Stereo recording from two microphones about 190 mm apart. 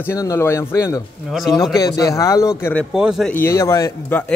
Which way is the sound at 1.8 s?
20° left (ahead or behind).